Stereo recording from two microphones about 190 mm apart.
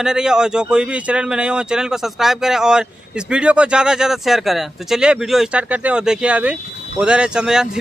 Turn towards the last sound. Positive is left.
turn(degrees=-5)  # may be behind; listen again after turning